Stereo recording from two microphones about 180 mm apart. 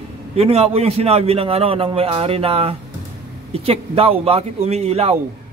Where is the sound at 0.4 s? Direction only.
35° right (ahead or behind).